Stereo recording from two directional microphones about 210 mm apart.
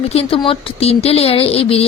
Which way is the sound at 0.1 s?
25° left (ahead or behind).